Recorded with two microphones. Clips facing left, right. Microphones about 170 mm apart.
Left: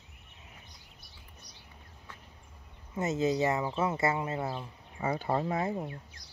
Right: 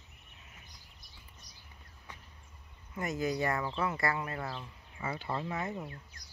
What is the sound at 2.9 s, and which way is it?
Speech, 25° left (ahead or behind).